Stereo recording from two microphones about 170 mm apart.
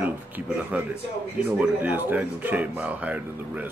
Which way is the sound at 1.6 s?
10° right (ahead or behind).